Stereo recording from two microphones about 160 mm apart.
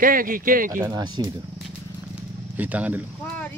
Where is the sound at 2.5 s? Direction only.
10° right (ahead or behind).